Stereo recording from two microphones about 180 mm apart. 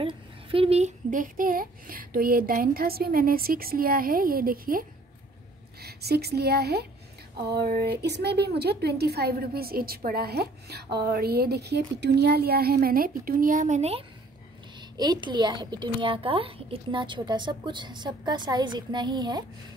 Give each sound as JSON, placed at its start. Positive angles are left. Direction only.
{"t": 0.0, "sound": "speech", "side_deg": -30}
{"t": 14.8, "sound": "a woman's voice", "side_deg": -25}